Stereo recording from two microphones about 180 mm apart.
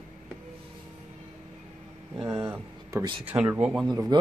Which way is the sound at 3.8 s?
25° right (ahead or behind).